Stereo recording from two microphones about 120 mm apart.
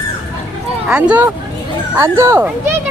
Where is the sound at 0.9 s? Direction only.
10° right (ahead or behind).